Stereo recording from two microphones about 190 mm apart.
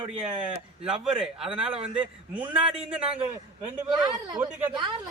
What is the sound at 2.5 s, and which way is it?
Speech, 30° right (ahead or behind).